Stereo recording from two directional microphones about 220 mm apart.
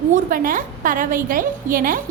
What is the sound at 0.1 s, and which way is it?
A woman's voice, 40° right (ahead or behind).